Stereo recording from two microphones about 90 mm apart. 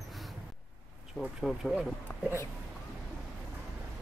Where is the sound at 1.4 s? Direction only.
Centre (ahead or behind).